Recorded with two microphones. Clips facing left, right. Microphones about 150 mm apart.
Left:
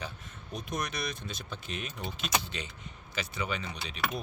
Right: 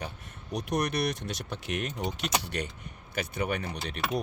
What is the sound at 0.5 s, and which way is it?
Speech, 65° right (ahead or behind).